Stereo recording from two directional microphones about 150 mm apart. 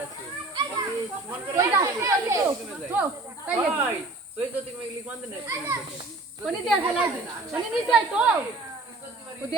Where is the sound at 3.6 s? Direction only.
15° right (ahead or behind).